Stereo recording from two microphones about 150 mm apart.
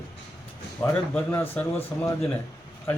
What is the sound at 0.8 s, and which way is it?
Speech, 20° left (ahead or behind).